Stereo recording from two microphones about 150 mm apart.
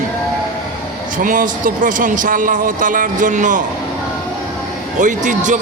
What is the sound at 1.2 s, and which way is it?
A man's voice, 65° right (ahead or behind).